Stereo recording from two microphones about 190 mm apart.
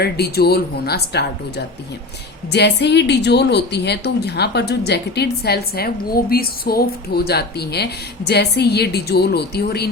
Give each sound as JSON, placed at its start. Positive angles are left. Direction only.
{"t": 0.0, "sound": "a woman's voice", "side_deg": 55}